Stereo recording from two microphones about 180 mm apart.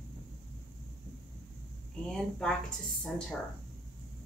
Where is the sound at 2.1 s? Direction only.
5° left (ahead or behind).